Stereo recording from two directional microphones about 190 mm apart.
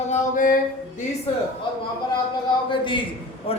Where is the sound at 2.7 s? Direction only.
25° left (ahead or behind).